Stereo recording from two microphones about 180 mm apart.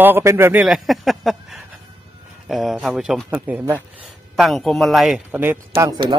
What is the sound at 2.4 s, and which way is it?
Speech, centre (ahead or behind).